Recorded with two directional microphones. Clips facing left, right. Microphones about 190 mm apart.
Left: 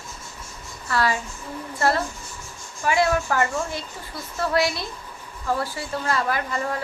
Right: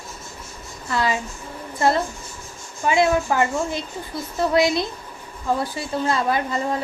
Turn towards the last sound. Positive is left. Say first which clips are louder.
# right 3 dB
turn(degrees=-20)  # may be behind; listen again after turning